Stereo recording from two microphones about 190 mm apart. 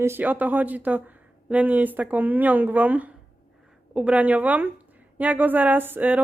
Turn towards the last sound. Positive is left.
turn(degrees=-10)  # may be behind; listen again after turning